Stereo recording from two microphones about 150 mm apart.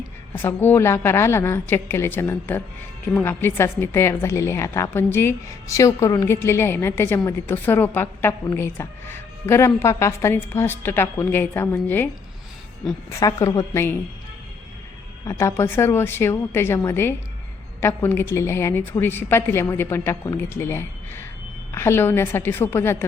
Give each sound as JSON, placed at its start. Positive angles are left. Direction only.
{"t": 0.3, "sound": "a woman's voice", "side_deg": 15}
{"t": 13.1, "sound": "a woman's voice", "side_deg": 20}
{"t": 15.2, "sound": "a woman's voice", "side_deg": 20}